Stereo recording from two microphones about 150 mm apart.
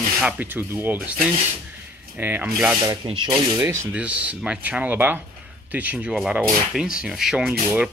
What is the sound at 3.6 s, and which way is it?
Rub, 20° right (ahead or behind).